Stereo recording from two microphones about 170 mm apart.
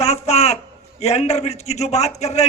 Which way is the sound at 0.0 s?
40° left (ahead or behind).